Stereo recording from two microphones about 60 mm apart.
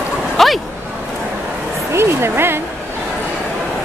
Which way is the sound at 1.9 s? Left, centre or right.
Right.